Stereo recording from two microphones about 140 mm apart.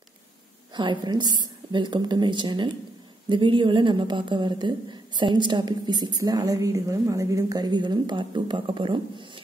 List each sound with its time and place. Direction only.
0.7 s a woman's voice: 35° right (ahead or behind)